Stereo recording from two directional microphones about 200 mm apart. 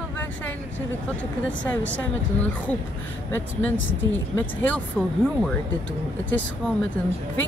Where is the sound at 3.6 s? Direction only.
70° left (ahead or behind).